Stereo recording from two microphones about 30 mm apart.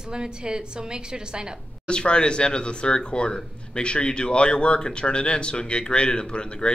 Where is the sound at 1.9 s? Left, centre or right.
Left.